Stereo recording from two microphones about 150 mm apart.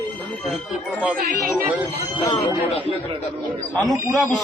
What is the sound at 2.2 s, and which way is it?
Speech, 40° left (ahead or behind).